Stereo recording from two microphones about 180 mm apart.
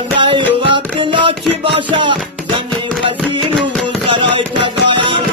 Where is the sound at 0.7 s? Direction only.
25° right (ahead or behind).